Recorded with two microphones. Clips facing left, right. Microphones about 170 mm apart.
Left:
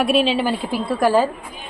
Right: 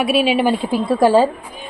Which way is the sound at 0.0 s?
5° right (ahead or behind).